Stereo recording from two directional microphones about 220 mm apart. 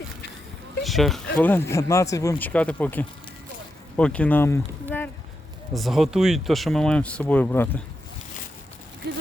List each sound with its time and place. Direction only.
0.8 s speech: centre (ahead or behind)
5.7 s speech: centre (ahead or behind)
9.0 s a sound: 50° right (ahead or behind)